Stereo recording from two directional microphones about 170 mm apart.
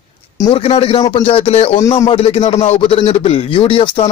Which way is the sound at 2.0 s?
35° left (ahead or behind).